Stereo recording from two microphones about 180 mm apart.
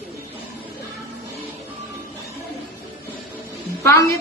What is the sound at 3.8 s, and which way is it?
Speech, 15° left (ahead or behind).